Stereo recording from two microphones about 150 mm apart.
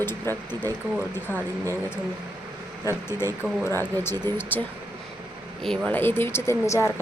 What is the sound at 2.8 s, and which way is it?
A woman's voice, 15° left (ahead or behind).